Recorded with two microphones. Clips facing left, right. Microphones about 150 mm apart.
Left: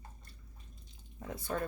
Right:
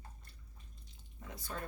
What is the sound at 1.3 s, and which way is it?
Speech, 55° left (ahead or behind).